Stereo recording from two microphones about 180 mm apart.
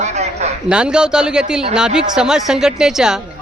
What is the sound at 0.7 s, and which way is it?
Speech, 5° right (ahead or behind).